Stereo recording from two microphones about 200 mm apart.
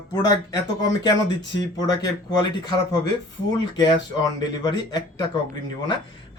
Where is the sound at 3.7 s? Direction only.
20° left (ahead or behind).